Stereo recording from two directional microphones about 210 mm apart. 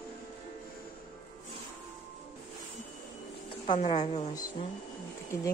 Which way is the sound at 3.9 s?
30° left (ahead or behind).